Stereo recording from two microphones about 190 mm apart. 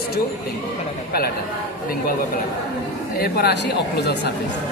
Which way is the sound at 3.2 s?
55° left (ahead or behind).